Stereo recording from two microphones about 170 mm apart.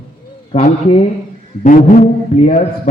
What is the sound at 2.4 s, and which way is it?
Speech, 45° left (ahead or behind).